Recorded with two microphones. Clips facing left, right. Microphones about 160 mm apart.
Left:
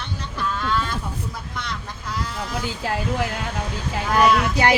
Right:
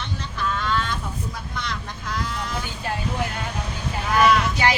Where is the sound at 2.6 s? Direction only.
90° left.